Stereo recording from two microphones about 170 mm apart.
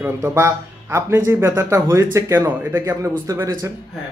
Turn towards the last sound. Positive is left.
turn(degrees=-20)  # may be behind; listen again after turning